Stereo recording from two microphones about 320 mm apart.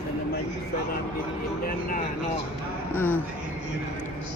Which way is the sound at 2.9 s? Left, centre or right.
Centre.